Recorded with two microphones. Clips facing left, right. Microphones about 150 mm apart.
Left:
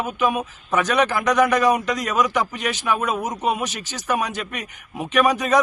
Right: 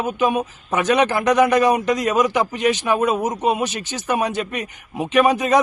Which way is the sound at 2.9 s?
30° right (ahead or behind).